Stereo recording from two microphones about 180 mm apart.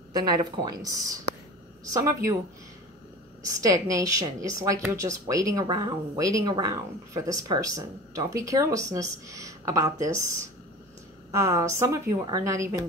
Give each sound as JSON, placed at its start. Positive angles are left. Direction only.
{"t": 0.1, "sound": "a woman's voice", "side_deg": -25}
{"t": 3.4, "sound": "a woman's voice", "side_deg": -20}
{"t": 11.3, "sound": "a woman's voice", "side_deg": -20}